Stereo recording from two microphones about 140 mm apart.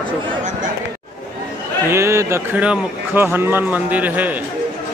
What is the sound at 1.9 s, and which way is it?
A man's voice, 20° right (ahead or behind).